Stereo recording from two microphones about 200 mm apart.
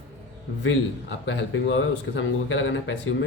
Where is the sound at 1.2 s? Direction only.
60° left (ahead or behind).